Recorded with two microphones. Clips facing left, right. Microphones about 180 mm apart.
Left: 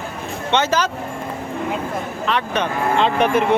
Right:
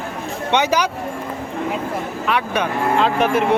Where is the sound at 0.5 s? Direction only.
15° right (ahead or behind).